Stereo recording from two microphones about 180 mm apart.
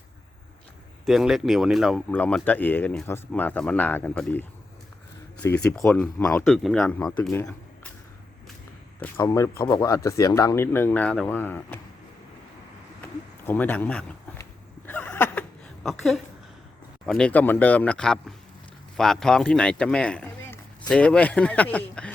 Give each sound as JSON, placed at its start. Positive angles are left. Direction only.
{"t": 1.0, "sound": "speech", "side_deg": 0}
{"t": 2.1, "sound": "speech", "side_deg": 10}
{"t": 5.5, "sound": "speech", "side_deg": 5}
{"t": 6.5, "sound": "speech", "side_deg": 0}
{"t": 7.2, "sound": "a sound", "side_deg": 5}
{"t": 9.0, "sound": "speech", "side_deg": 15}
{"t": 13.0, "sound": "a sound", "side_deg": 10}
{"t": 17.1, "sound": "speech", "side_deg": 5}